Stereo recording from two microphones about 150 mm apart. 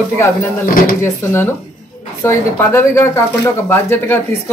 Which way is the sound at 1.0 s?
15° left (ahead or behind).